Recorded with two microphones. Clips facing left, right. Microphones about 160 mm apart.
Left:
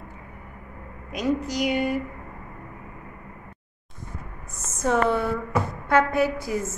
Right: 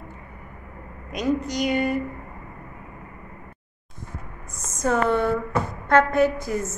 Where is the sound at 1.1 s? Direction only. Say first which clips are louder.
Right 1 dB; 5° left (ahead or behind).